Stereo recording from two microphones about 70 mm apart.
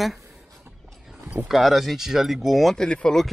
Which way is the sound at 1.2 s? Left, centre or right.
Right.